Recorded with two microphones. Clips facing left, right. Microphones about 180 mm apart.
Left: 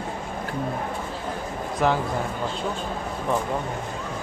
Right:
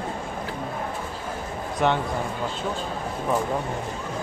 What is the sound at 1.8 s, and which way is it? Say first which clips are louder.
Speech: even; centre (ahead or behind).